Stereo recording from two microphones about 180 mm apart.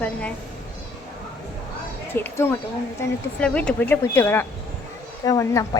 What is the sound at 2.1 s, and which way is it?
A woman's voice, 10° left (ahead or behind).